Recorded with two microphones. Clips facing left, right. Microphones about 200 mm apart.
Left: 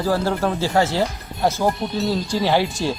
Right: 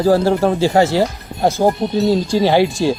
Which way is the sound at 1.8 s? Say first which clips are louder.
Right 6 dB; 45° right (ahead or behind).